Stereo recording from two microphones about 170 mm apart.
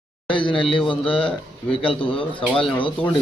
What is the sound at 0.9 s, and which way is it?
A man's voice, 30° left (ahead or behind).